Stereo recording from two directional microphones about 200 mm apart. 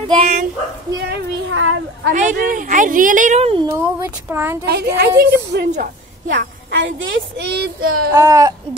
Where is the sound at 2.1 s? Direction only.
40° right (ahead or behind).